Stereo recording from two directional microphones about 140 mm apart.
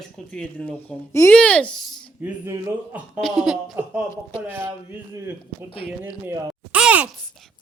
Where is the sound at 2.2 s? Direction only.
15° right (ahead or behind).